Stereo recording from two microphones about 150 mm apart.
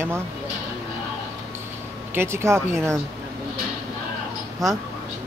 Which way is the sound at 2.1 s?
15° right (ahead or behind).